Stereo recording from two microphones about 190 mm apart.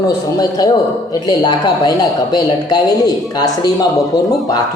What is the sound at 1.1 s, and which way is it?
Speech, 20° left (ahead or behind).